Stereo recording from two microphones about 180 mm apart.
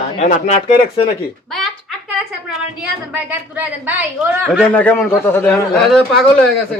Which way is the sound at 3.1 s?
10° right (ahead or behind).